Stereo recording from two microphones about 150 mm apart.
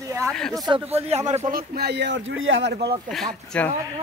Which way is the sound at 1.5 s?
85° right.